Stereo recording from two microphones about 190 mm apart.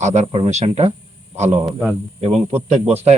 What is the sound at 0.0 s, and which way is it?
Speech, 40° right (ahead or behind).